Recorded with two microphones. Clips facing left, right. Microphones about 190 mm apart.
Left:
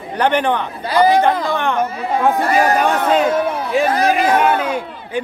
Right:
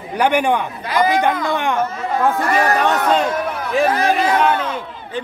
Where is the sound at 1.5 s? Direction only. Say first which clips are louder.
Left 1 dB; 15° right (ahead or behind).